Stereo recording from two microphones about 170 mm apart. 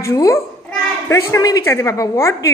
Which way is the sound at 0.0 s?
20° left (ahead or behind).